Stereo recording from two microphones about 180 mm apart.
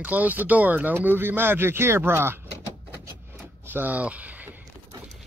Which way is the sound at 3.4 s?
10° right (ahead or behind).